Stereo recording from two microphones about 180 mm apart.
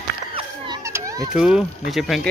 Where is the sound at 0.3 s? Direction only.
30° right (ahead or behind).